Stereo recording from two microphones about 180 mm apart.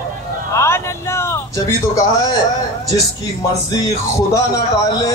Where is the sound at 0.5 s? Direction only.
15° left (ahead or behind).